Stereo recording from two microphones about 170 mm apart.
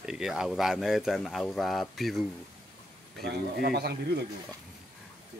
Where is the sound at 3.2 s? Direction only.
70° right (ahead or behind).